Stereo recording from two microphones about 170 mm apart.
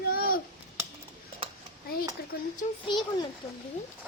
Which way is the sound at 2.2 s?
65° left (ahead or behind).